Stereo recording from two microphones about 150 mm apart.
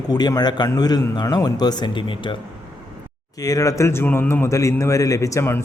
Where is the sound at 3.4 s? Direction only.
25° left (ahead or behind).